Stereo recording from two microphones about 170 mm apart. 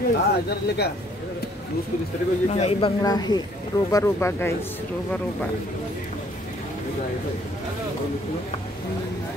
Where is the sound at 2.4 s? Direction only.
40° left (ahead or behind).